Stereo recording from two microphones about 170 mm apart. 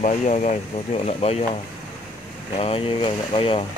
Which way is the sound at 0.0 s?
45° left (ahead or behind).